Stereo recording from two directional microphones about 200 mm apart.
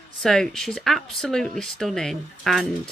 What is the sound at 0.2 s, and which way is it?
Speech, centre (ahead or behind).